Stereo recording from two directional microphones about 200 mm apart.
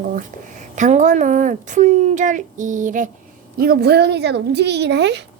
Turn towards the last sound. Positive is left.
turn(degrees=-60)  # may be behind; listen again after turning